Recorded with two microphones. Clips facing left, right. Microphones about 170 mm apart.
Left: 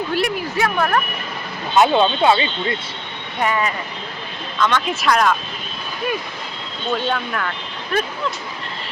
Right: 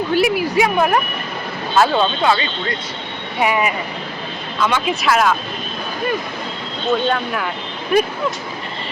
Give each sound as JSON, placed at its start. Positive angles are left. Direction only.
{"t": 0.1, "sound": "speech", "side_deg": 0}
{"t": 0.5, "sound": "speech", "side_deg": -15}
{"t": 1.7, "sound": "speech", "side_deg": 20}
{"t": 3.4, "sound": "speech", "side_deg": -10}
{"t": 7.1, "sound": "speech", "side_deg": -5}